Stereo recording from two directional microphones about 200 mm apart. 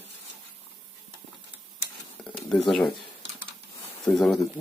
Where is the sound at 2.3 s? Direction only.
Centre (ahead or behind).